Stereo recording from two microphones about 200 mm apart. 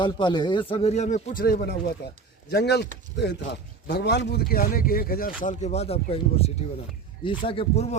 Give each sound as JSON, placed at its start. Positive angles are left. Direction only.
{"t": 0.0, "sound": "a man's voice", "side_deg": 20}